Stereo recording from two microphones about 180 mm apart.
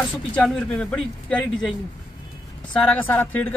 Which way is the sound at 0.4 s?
5° left (ahead or behind).